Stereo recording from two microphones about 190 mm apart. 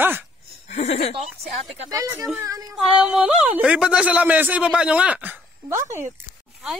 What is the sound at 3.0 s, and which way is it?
Speech, 5° right (ahead or behind).